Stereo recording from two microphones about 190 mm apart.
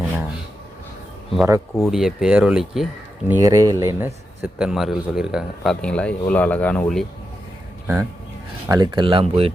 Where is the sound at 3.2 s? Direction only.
15° right (ahead or behind).